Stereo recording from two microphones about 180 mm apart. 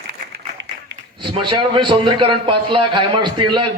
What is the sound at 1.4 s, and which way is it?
A man's voice, 25° right (ahead or behind).